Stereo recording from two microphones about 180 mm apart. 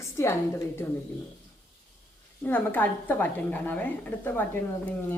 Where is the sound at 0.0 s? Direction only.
15° left (ahead or behind).